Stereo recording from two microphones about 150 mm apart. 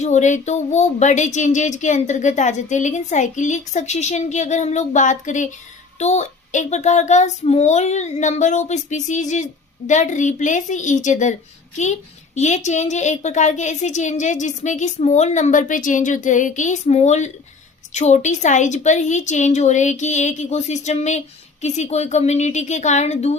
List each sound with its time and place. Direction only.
0.0 s speech: 50° left (ahead or behind)